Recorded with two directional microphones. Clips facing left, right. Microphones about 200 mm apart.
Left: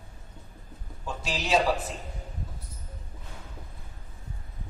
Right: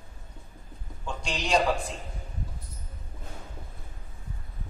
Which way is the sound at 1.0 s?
5° left (ahead or behind).